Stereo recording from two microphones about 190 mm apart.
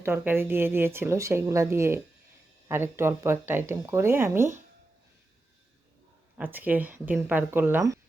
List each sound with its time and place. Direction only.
0.0 s speech: 10° right (ahead or behind)
6.3 s speech: 10° right (ahead or behind)